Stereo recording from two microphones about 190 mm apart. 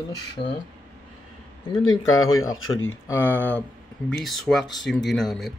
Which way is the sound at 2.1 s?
90° left.